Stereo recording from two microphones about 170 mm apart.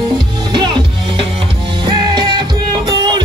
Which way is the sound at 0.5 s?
25° right (ahead or behind).